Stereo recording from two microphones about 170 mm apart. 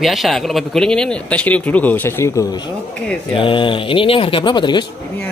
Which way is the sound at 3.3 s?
30° left (ahead or behind).